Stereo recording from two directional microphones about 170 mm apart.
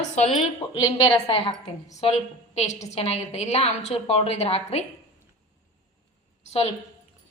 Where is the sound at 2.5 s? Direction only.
40° left (ahead or behind).